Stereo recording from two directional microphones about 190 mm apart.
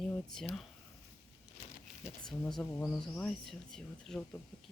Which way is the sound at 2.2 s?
5° left (ahead or behind).